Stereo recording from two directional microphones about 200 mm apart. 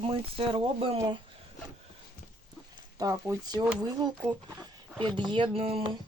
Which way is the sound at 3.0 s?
15° right (ahead or behind).